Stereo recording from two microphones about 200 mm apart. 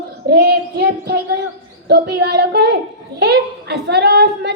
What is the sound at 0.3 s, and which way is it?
A woman's voice, 55° right (ahead or behind).